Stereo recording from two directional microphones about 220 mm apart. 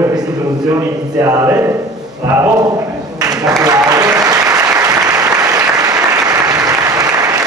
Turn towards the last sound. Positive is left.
turn(degrees=-15)  # may be behind; listen again after turning